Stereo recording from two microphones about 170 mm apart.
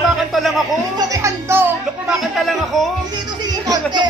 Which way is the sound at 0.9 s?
20° right (ahead or behind).